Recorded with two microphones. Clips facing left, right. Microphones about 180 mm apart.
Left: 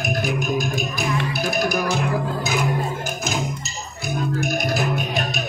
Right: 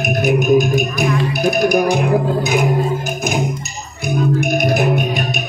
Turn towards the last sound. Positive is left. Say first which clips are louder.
# right 7 dB
turn(degrees=-20)  # may be behind; listen again after turning